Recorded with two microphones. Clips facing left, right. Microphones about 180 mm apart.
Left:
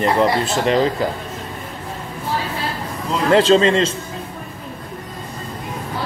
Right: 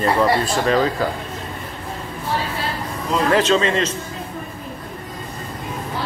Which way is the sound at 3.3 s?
30° left (ahead or behind).